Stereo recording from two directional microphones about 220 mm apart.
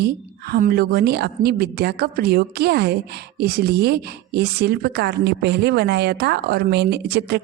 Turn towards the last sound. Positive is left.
turn(degrees=-50)  # may be behind; listen again after turning